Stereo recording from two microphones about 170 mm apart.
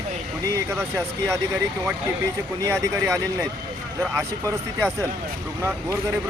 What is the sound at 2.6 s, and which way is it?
Speech, 15° right (ahead or behind).